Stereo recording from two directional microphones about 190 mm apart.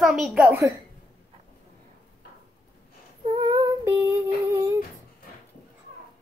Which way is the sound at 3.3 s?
25° right (ahead or behind).